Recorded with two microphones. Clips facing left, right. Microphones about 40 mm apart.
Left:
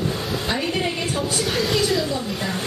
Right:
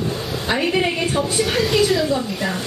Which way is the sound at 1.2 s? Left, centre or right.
Centre.